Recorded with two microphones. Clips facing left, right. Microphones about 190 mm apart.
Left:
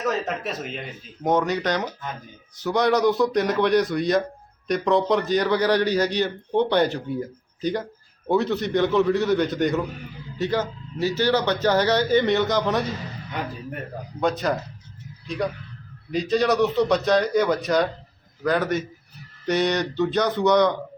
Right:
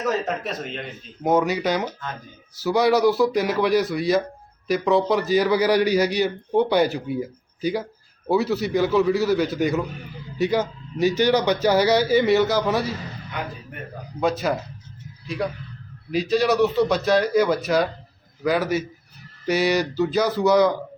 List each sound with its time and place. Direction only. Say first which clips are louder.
0.0 s a man's voice: right 1 dB; centre (ahead or behind)
1.2 s a man's voice: right 2 dB; 5° right (ahead or behind)
14.2 s a man's voice: right 1 dB; 5° right (ahead or behind)
16.1 s a man's voice: right 1 dB; 5° right (ahead or behind)